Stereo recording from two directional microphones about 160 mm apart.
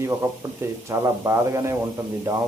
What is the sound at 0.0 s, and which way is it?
A man's voice, 15° right (ahead or behind).